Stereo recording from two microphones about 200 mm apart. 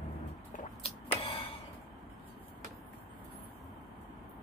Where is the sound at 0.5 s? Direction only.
30° left (ahead or behind).